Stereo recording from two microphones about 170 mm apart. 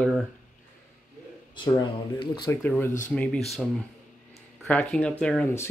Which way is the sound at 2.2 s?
30° left (ahead or behind).